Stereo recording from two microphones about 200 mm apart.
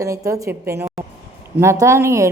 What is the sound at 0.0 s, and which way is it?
A woman's voice, 15° right (ahead or behind).